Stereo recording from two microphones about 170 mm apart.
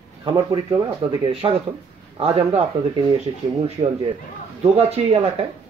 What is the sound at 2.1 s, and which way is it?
Speech, 35° right (ahead or behind).